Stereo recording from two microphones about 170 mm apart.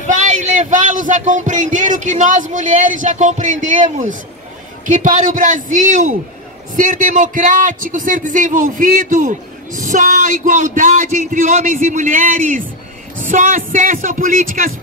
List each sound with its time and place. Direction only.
0.0 s a man's voice: 45° right (ahead or behind)